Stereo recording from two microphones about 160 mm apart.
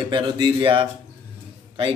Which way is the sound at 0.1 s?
30° right (ahead or behind).